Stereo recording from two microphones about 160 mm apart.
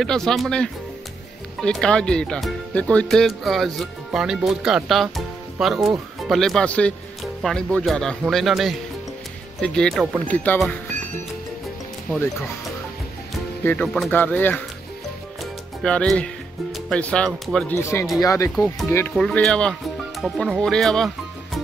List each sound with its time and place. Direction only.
0.0 s speech: 5° left (ahead or behind)
13.7 s speech: 10° left (ahead or behind)
15.8 s speech: 5° left (ahead or behind)
17.7 s speech: 15° left (ahead or behind)
19.1 s speech: 5° left (ahead or behind)